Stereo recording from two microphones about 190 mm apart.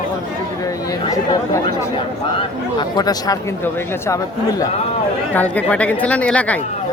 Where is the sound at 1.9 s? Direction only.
25° left (ahead or behind); by 6.6 s 5° left (ahead or behind).